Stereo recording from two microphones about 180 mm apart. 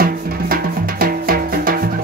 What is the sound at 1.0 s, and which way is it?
Music, 55° right (ahead or behind).